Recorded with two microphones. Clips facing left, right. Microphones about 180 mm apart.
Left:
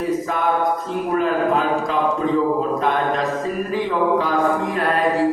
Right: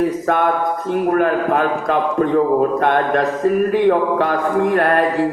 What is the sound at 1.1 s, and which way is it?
A man's voice, 60° right (ahead or behind).